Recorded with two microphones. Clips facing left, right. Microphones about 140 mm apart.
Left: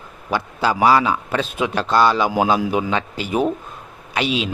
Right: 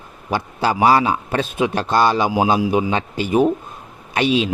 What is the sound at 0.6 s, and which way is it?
A man's voice, 25° right (ahead or behind).